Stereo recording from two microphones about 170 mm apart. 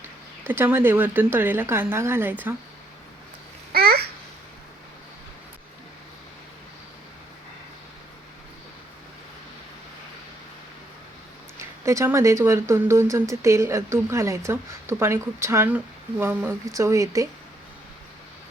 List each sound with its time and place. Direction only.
0.4 s speech: 10° right (ahead or behind)
3.7 s babbling: 65° right (ahead or behind)
11.9 s speech: 15° right (ahead or behind)